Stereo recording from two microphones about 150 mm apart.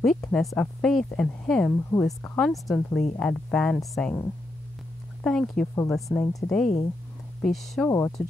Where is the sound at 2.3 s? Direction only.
Centre (ahead or behind).